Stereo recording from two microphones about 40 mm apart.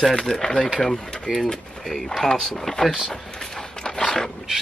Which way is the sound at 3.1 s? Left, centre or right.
Centre.